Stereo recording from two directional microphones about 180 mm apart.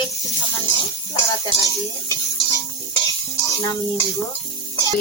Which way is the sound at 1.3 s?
20° left (ahead or behind).